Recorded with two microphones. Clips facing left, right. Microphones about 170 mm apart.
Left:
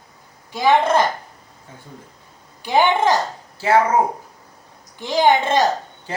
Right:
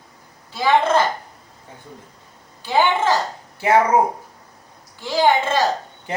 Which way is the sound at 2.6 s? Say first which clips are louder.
Left 2 dB; 15° left (ahead or behind).